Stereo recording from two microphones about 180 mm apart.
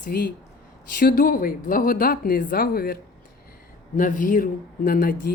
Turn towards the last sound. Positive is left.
turn(degrees=55)  # may be behind; listen again after turning